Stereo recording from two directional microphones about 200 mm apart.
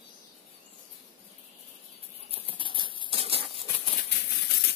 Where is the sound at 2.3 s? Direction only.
25° right (ahead or behind).